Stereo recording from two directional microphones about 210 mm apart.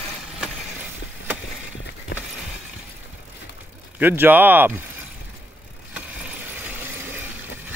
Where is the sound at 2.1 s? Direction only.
50° left (ahead or behind).